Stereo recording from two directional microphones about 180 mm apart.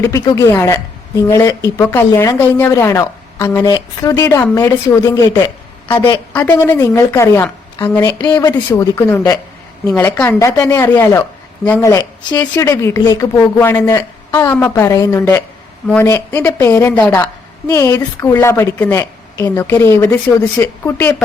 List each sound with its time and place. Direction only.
0.0 s speech: 15° left (ahead or behind)